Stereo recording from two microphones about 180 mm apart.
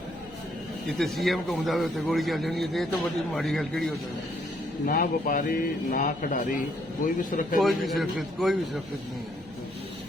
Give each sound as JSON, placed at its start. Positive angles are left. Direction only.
{"t": 0.9, "sound": "a man's voice", "side_deg": 0}
{"t": 4.9, "sound": "a man's voice", "side_deg": 50}
{"t": 7.6, "sound": "a man's voice", "side_deg": 0}